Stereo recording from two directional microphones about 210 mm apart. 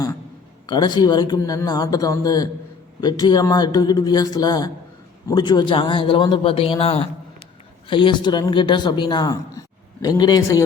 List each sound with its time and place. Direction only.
0.7 s speech: 20° left (ahead or behind)